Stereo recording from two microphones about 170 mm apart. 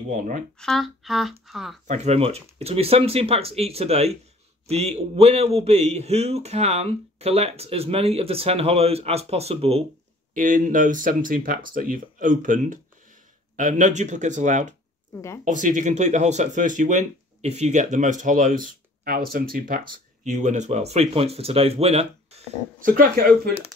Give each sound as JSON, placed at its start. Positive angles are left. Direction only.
{"t": 0.6, "sound": "speech", "side_deg": 0}
{"t": 1.9, "sound": "a man's voice", "side_deg": -35}
{"t": 10.3, "sound": "speech", "side_deg": -50}
{"t": 22.8, "sound": "speech", "side_deg": -55}